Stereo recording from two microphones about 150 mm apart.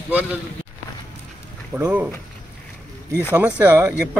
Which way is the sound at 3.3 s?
10° right (ahead or behind).